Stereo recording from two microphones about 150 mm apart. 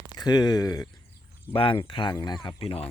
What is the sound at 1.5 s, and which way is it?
Speech, 35° left (ahead or behind).